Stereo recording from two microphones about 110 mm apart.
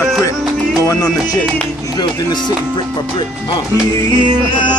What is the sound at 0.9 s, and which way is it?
Music, 35° left (ahead or behind).